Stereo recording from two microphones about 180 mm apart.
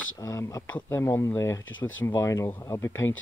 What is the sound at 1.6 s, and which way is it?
Speech, 90° left.